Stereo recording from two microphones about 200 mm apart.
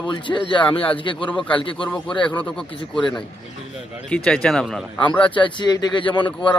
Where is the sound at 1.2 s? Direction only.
5° left (ahead or behind).